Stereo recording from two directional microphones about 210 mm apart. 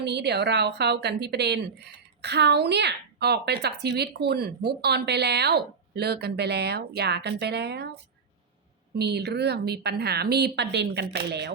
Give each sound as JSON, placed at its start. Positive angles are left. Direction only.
{"t": 0.0, "sound": "speech", "side_deg": -55}
{"t": 9.0, "sound": "speech", "side_deg": -50}